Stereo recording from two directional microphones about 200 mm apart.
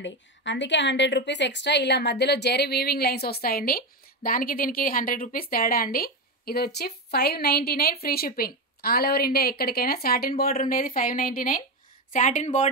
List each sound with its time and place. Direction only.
0.0 s a woman's voice: 65° left (ahead or behind); by 12.4 s 40° left (ahead or behind)